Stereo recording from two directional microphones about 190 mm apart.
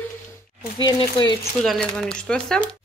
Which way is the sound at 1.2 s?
25° left (ahead or behind).